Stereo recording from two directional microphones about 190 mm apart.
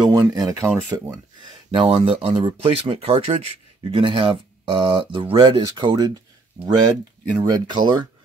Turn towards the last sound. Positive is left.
turn(degrees=-20)  # may be behind; listen again after turning